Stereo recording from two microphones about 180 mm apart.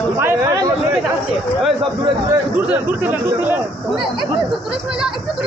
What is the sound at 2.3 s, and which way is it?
Speech, 10° right (ahead or behind).